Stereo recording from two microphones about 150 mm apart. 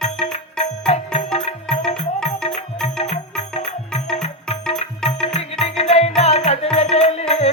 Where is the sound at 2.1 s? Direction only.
5° left (ahead or behind).